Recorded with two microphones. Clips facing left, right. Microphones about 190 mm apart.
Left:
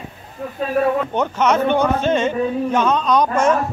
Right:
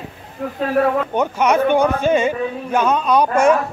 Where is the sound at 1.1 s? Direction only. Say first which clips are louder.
Right 1 dB; 10° right (ahead or behind).